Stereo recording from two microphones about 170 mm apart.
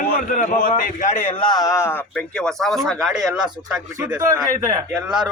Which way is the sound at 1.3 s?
25° left (ahead or behind).